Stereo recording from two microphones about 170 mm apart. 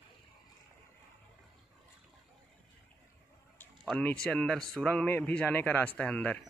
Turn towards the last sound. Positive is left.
turn(degrees=10)  # may be behind; listen again after turning